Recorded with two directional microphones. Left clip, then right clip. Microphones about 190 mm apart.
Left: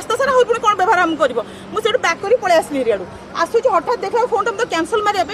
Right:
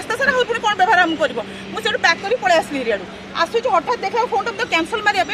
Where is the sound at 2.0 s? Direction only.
35° left (ahead or behind).